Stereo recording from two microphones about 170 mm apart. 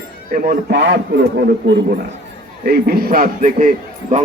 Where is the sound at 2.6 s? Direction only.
65° right (ahead or behind); by 4.2 s 45° right (ahead or behind).